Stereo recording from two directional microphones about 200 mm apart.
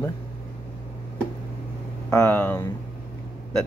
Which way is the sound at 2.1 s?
10° left (ahead or behind).